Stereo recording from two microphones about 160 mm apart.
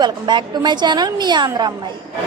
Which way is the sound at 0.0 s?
30° right (ahead or behind).